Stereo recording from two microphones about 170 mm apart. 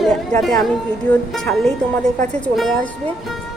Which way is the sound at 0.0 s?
5° left (ahead or behind).